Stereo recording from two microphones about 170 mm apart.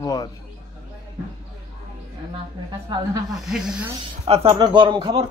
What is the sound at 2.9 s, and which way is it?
Speech, 25° right (ahead or behind).